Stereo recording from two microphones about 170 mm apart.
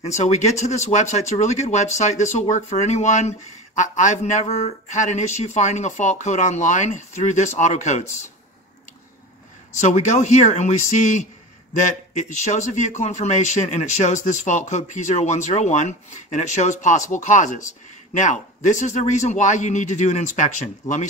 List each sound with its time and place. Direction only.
0.2 s speech: 40° left (ahead or behind)
9.8 s speech: 45° left (ahead or behind)